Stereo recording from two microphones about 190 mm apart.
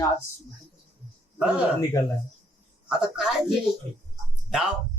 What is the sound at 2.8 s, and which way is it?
Speech, 5° right (ahead or behind).